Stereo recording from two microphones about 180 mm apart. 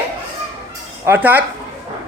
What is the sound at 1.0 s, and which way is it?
Speech, 10° right (ahead or behind).